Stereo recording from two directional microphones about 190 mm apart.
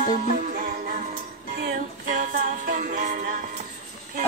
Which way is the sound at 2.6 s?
45° right (ahead or behind).